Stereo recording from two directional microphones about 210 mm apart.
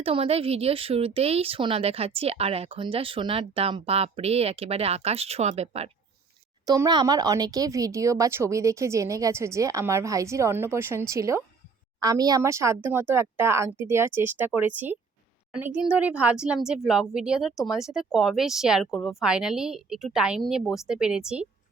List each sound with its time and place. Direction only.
0.0 s speech: 25° right (ahead or behind)
6.7 s speech: 20° right (ahead or behind)